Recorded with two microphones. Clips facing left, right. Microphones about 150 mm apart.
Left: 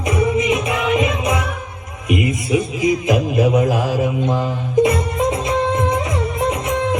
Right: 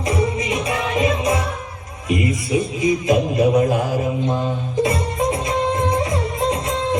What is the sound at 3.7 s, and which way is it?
Mantra, 90° left.